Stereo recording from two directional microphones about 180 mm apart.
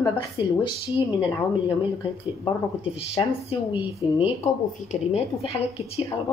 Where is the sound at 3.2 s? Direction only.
30° left (ahead or behind).